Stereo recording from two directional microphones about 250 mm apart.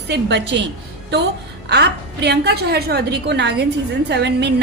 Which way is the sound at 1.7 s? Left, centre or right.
Right.